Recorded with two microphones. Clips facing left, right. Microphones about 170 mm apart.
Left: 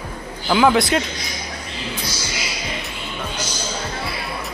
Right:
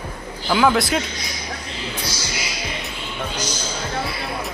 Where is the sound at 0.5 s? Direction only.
Centre (ahead or behind).